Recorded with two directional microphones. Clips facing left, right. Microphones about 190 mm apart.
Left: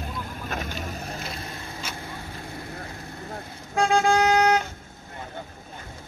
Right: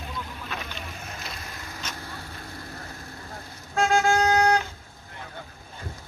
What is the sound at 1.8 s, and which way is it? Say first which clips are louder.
Vehicle: even; 10° left (ahead or behind).